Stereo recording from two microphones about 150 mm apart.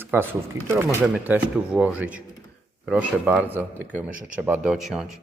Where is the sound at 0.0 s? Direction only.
15° right (ahead or behind).